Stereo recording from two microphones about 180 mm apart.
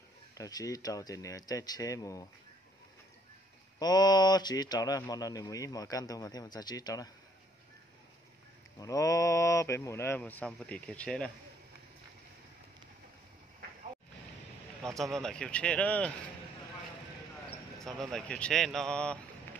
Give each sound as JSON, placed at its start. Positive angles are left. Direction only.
{"t": 0.3, "sound": "speech", "side_deg": 20}
{"t": 3.8, "sound": "speech", "side_deg": 20}
{"t": 8.7, "sound": "speech", "side_deg": 20}
{"t": 15.1, "sound": "a man's voice", "side_deg": 5}
{"t": 17.7, "sound": "a man's voice", "side_deg": 0}